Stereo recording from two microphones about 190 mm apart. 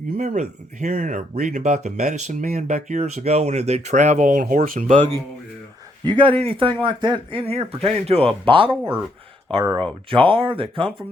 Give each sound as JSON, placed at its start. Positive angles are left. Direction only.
{"t": 0.2, "sound": "speech", "side_deg": -40}
{"t": 6.1, "sound": "speech", "side_deg": -30}